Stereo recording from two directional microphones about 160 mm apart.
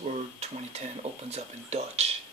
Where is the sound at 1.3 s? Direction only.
40° right (ahead or behind).